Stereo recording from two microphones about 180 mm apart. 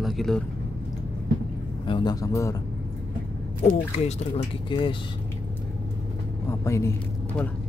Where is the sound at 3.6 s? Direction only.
35° left (ahead or behind).